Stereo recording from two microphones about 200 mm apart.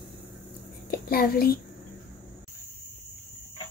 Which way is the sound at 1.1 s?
50° left (ahead or behind).